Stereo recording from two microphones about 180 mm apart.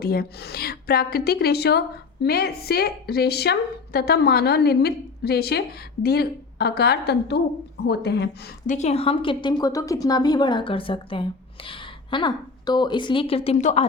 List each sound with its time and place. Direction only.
0.0 s a woman's voice: 60° left (ahead or behind)
8.6 s a woman's voice: 40° left (ahead or behind)